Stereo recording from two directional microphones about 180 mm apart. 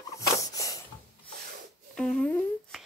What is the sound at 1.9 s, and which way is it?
Humming, 5° left (ahead or behind).